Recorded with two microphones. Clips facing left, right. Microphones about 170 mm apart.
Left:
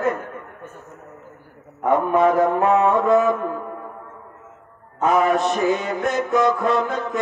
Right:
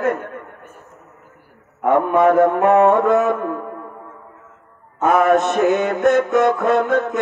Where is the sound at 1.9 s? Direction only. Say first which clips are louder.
Right 3 dB; 60° right (ahead or behind).